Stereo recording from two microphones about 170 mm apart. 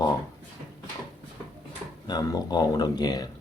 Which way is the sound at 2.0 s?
25° left (ahead or behind).